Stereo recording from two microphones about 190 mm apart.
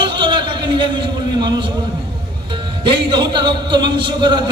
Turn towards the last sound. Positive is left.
turn(degrees=-25)  # may be behind; listen again after turning